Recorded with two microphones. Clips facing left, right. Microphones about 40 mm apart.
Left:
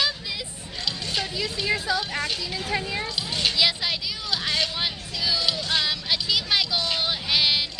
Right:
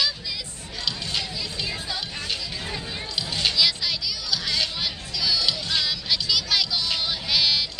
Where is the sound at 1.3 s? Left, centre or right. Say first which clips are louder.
Left 5 dB; left.